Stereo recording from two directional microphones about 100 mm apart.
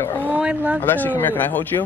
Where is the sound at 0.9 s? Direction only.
20° left (ahead or behind).